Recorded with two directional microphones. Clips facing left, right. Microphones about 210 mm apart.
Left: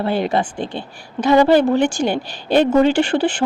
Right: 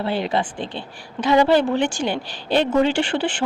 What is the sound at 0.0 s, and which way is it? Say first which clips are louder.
A woman's voice: left 3 dB; 50° left (ahead or behind).